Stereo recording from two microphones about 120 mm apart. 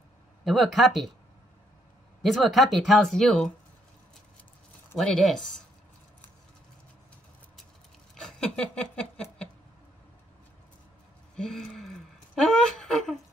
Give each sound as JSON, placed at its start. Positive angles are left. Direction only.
{"t": 0.5, "sound": "speech", "side_deg": 0}
{"t": 2.2, "sound": "speech", "side_deg": 0}
{"t": 4.9, "sound": "speech", "side_deg": 5}
{"t": 8.1, "sound": "rub", "side_deg": 5}
{"t": 11.3, "sound": "speech", "side_deg": 5}